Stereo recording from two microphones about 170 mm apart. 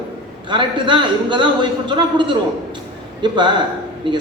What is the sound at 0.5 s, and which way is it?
A man's voice, 30° right (ahead or behind).